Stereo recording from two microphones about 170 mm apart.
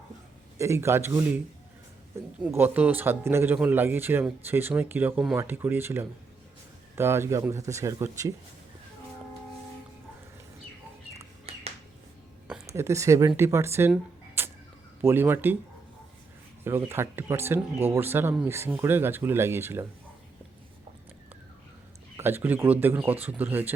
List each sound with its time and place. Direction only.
0.6 s speech: 15° right (ahead or behind)
2.4 s speech: 10° right (ahead or behind)
11.5 s finger snapping: 35° right (ahead or behind)
12.6 s speech: 15° right (ahead or behind)
13.9 s a sound: 15° right (ahead or behind)
15.0 s speech: 15° right (ahead or behind)
16.6 s speech: 15° right (ahead or behind)
22.2 s speech: 15° right (ahead or behind)